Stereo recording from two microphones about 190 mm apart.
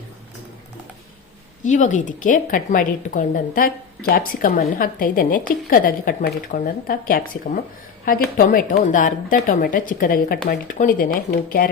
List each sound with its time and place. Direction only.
1.6 s a woman's voice: 40° left (ahead or behind)